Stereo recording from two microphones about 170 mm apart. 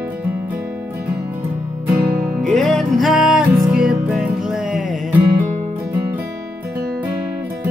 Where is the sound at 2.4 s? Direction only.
Centre (ahead or behind).